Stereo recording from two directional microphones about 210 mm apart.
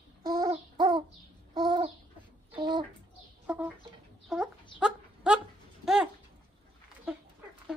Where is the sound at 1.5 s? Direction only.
20° right (ahead or behind).